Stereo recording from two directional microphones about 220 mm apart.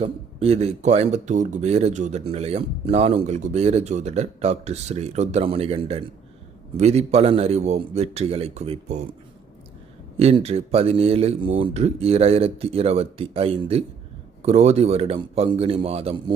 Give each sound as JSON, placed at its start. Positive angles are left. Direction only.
{"t": 0.0, "sound": "speech", "side_deg": -25}
{"t": 10.2, "sound": "speech", "side_deg": -25}